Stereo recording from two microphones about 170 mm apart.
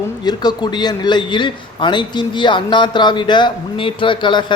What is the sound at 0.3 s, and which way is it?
A man's voice, 25° left (ahead or behind).